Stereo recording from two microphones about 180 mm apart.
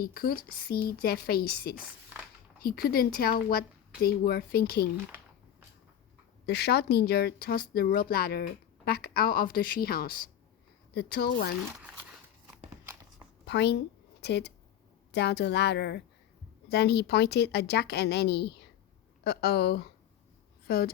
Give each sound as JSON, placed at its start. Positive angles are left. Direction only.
{"t": 0.0, "sound": "a woman's voice", "side_deg": 55}
{"t": 6.4, "sound": "a woman's voice", "side_deg": 65}
{"t": 13.4, "sound": "a sound", "side_deg": 70}
{"t": 15.1, "sound": "a woman's voice", "side_deg": 70}